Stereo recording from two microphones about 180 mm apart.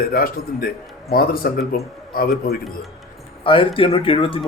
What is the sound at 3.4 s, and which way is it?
Speech, 30° left (ahead or behind).